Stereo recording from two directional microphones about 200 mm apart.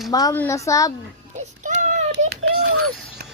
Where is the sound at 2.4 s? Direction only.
90° right.